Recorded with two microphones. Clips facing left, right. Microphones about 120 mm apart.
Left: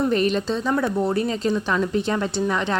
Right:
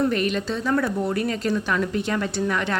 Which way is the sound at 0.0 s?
30° left (ahead or behind).